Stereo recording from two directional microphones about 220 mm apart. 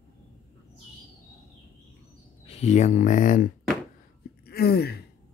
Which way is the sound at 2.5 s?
30° left (ahead or behind).